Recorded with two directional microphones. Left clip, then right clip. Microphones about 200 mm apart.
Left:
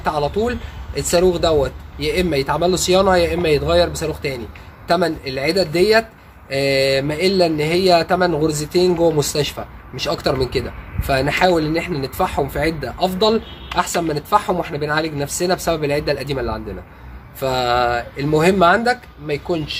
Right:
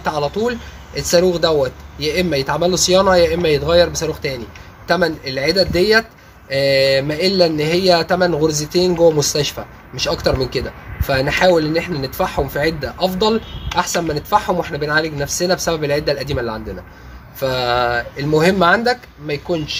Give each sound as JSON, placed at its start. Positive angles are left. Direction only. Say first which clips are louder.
{"t": 0.0, "sound": "speech", "louder": "even", "side_deg": -15}